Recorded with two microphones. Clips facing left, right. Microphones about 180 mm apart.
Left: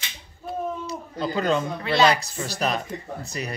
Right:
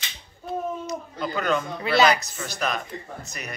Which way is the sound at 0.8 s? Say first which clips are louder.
Left 1 dB; 30° left (ahead or behind).